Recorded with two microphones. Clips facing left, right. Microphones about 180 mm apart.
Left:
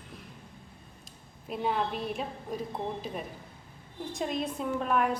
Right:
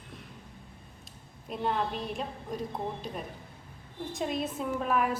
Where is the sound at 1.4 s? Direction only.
5° left (ahead or behind).